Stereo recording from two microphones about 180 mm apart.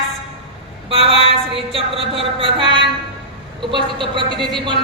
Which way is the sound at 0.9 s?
30° right (ahead or behind).